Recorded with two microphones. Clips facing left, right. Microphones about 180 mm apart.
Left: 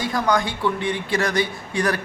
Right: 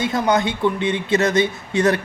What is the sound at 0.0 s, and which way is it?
Speech, 25° right (ahead or behind).